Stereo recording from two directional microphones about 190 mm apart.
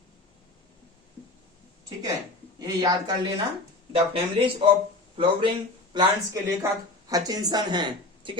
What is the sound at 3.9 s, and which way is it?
Speech, 30° right (ahead or behind).